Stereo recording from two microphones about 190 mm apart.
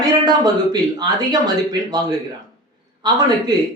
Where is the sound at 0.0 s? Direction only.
20° right (ahead or behind).